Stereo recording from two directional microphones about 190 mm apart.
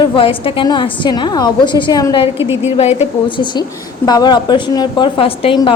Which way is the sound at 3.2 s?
25° left (ahead or behind).